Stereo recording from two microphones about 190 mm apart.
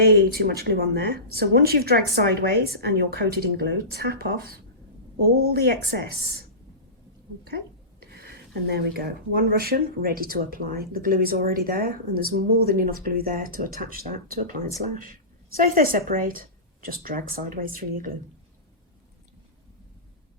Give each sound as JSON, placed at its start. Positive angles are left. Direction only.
{"t": 0.0, "sound": "speech", "side_deg": -55}
{"t": 8.1, "sound": "speech", "side_deg": -60}
{"t": 15.5, "sound": "speech", "side_deg": -50}